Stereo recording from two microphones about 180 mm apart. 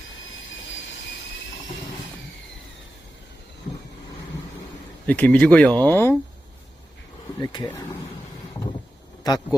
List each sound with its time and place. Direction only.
5.0 s speech: 10° left (ahead or behind)
7.3 s a sound: 20° left (ahead or behind)
9.2 s speech: 20° left (ahead or behind)